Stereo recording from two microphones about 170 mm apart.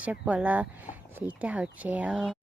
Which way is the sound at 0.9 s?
10° right (ahead or behind).